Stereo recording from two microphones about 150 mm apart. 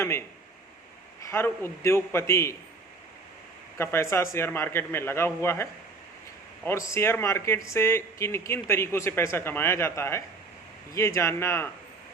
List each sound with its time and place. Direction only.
0.0 s a sound: 15° left (ahead or behind)
1.2 s speech: 15° left (ahead or behind)
3.8 s speech: 15° left (ahead or behind)
6.7 s speech: 20° left (ahead or behind)